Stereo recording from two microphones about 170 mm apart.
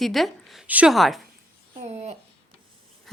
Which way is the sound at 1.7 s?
40° right (ahead or behind).